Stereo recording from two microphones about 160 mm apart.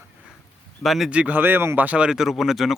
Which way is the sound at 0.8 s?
Centre (ahead or behind).